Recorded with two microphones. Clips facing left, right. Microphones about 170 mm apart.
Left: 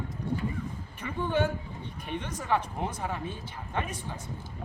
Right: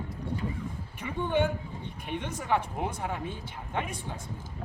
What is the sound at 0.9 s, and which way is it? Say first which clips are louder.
Speech: right 1 dB; 15° right (ahead or behind).